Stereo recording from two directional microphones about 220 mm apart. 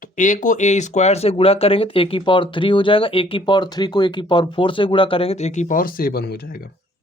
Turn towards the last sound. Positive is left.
turn(degrees=40)  # may be behind; listen again after turning